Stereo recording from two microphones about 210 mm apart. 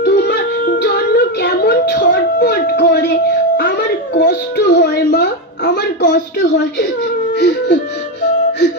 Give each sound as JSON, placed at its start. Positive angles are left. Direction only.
{"t": 0.0, "sound": "child singing", "side_deg": 50}
{"t": 7.3, "sound": "music", "side_deg": 50}